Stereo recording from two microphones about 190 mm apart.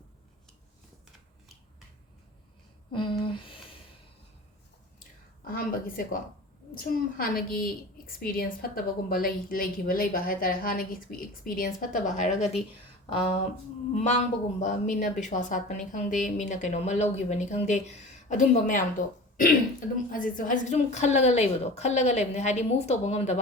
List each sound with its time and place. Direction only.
2.9 s a sound: 25° left (ahead or behind)
5.5 s a woman's voice: 50° left (ahead or behind)
13.1 s a woman's voice: 30° left (ahead or behind)